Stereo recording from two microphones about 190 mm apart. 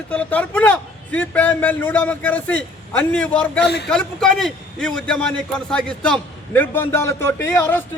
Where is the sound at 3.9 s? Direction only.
5° left (ahead or behind).